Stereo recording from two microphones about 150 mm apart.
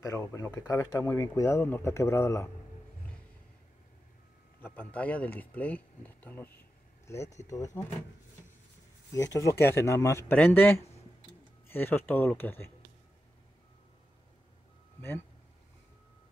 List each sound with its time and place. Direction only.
0.0 s speech: 20° left (ahead or behind)
4.6 s speech: 10° left (ahead or behind)
9.1 s speech: 20° left (ahead or behind)
15.0 s speech: 15° left (ahead or behind)